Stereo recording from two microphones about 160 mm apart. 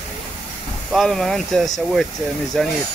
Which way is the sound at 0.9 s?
Centre (ahead or behind).